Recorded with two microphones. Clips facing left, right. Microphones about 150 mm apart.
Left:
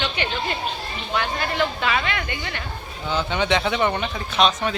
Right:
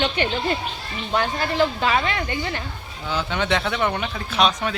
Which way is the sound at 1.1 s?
35° right (ahead or behind).